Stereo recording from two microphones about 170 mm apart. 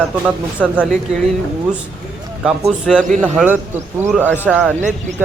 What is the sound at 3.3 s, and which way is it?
A man's voice, 10° right (ahead or behind).